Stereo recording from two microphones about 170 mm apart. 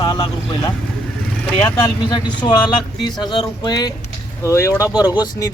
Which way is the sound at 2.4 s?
25° left (ahead or behind).